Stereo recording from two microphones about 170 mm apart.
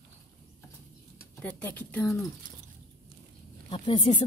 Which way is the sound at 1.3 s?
10° left (ahead or behind).